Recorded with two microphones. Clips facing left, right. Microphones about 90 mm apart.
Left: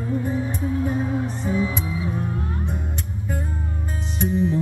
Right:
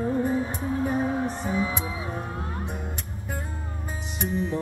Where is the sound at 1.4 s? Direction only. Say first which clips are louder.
Left 6 dB; 20° right (ahead or behind).